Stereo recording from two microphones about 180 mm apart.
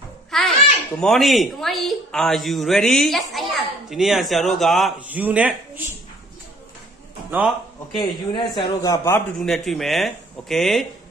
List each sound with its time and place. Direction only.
0.3 s a sound: centre (ahead or behind)
0.9 s a woman's voice: centre (ahead or behind)
7.2 s a man's voice: 10° right (ahead or behind)
8.0 s a man's voice: 25° left (ahead or behind)
9.4 s a woman's voice: centre (ahead or behind)